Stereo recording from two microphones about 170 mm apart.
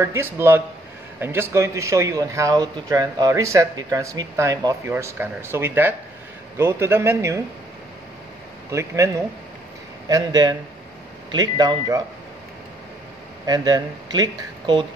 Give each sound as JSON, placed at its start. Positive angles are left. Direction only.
{"t": 0.0, "sound": "speech", "side_deg": -15}
{"t": 8.6, "sound": "speech", "side_deg": -20}
{"t": 13.5, "sound": "speech", "side_deg": -25}